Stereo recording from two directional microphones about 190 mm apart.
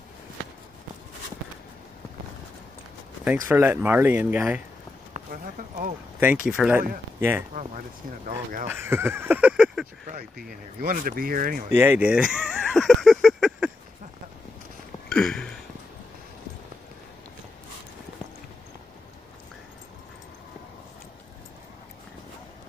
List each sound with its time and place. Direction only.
3.4 s speech: 10° right (ahead or behind)
6.1 s speech: 5° right (ahead or behind)
8.6 s speech: 10° right (ahead or behind)
10.8 s speech: 50° right (ahead or behind)
11.7 s a sound: 10° right (ahead or behind)
15.0 s a sound: 5° left (ahead or behind)